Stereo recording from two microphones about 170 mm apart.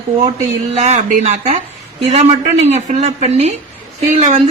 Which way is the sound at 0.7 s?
40° right (ahead or behind).